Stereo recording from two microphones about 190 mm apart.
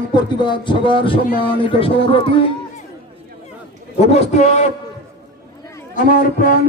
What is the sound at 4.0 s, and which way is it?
Speech, 35° left (ahead or behind).